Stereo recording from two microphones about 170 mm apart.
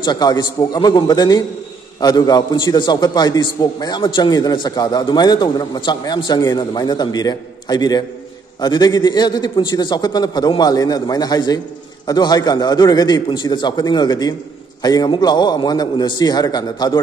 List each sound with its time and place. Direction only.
0.0 s a man's voice: 25° left (ahead or behind)